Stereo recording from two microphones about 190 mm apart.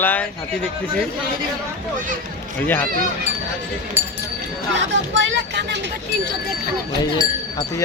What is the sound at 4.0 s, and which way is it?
Speech, 10° right (ahead or behind).